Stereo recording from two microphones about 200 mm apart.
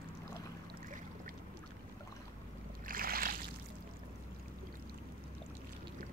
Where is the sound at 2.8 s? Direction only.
45° right (ahead or behind).